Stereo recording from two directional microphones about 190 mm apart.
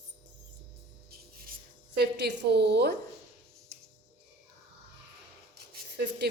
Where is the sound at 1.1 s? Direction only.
55° right (ahead or behind).